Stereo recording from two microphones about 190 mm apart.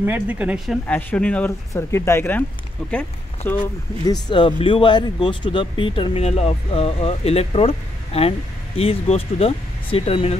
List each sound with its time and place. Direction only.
0.0 s speech: 10° right (ahead or behind)
0.8 s speech: 5° left (ahead or behind); by 10.3 s 30° left (ahead or behind)